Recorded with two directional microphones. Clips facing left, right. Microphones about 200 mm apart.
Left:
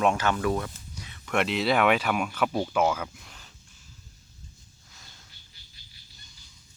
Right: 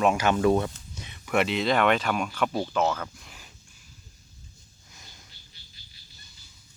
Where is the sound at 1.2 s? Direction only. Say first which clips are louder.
Right 1 dB; centre (ahead or behind).